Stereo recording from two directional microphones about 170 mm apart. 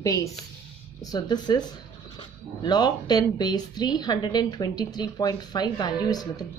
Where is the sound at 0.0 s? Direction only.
20° left (ahead or behind).